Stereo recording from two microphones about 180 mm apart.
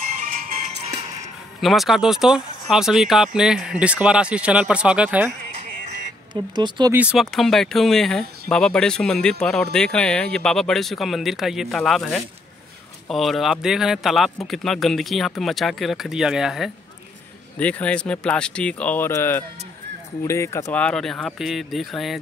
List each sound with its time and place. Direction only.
0.0 s music: 45° right (ahead or behind)
1.6 s speech: centre (ahead or behind)
6.3 s speech: 25° right (ahead or behind)
6.9 s speech: 5° right (ahead or behind)